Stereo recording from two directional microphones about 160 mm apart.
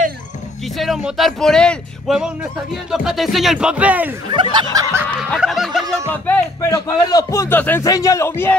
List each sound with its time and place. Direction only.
0.7 s speech: centre (ahead or behind)
4.4 s snicker: 30° right (ahead or behind)
5.4 s speech: centre (ahead or behind)
6.2 s speech: 15° left (ahead or behind)